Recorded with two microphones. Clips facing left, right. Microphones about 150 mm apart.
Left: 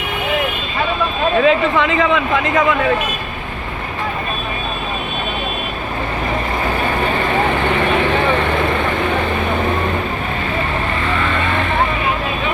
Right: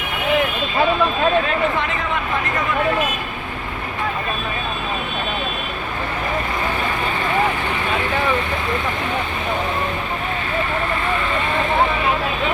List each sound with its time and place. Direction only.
1.5 s speech: 90° left